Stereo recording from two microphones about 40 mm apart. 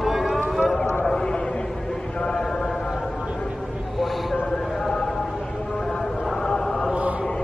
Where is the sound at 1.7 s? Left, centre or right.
Centre.